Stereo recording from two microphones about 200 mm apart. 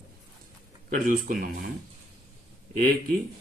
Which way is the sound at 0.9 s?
45° right (ahead or behind).